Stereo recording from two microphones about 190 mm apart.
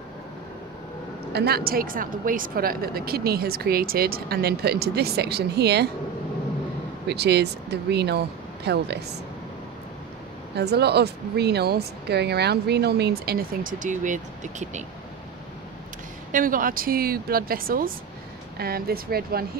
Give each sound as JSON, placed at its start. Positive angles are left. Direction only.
{"t": 1.3, "sound": "a woman's voice", "side_deg": -55}
{"t": 7.1, "sound": "speech", "side_deg": -60}
{"t": 10.5, "sound": "speech", "side_deg": -60}
{"t": 16.3, "sound": "a woman's voice", "side_deg": -45}